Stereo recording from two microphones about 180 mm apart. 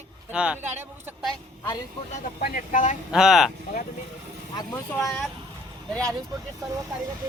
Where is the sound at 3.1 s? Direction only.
Centre (ahead or behind).